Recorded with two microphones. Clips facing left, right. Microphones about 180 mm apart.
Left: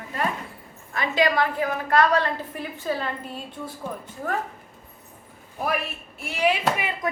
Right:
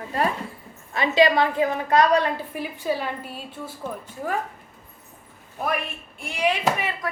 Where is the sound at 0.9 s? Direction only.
20° right (ahead or behind).